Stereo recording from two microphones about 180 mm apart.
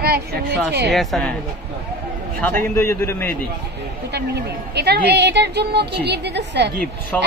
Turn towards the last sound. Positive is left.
turn(degrees=5)  # may be behind; listen again after turning